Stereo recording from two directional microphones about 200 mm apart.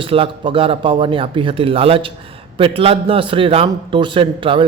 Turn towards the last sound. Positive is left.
turn(degrees=-25)  # may be behind; listen again after turning